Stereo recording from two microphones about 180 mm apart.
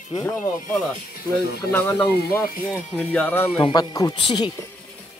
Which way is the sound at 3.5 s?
25° left (ahead or behind).